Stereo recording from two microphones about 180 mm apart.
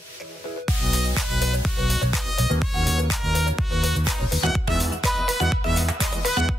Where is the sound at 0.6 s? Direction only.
Centre (ahead or behind).